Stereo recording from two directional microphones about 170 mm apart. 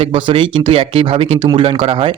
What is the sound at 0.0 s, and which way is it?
Speech, 30° right (ahead or behind).